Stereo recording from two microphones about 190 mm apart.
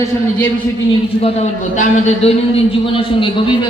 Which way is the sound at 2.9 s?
25° left (ahead or behind).